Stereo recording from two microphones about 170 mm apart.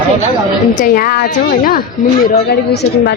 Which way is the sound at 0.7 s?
55° left (ahead or behind).